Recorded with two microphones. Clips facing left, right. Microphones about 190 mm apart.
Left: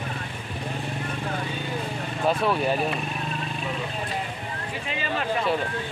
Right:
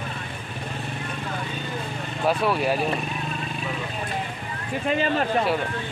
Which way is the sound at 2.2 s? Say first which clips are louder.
Right 1 dB; 5° right (ahead or behind).